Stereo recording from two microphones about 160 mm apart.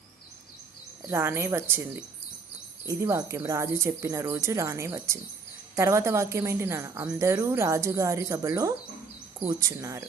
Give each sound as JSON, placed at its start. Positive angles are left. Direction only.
{"t": 1.0, "sound": "a woman's voice", "side_deg": -15}